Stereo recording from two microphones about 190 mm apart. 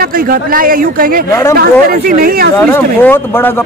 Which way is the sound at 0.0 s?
50° right (ahead or behind).